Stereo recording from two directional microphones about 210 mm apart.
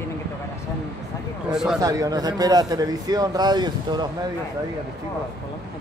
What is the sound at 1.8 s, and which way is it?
A man's voice, 15° right (ahead or behind).